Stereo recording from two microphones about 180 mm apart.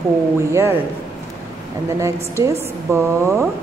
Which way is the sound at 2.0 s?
15° right (ahead or behind).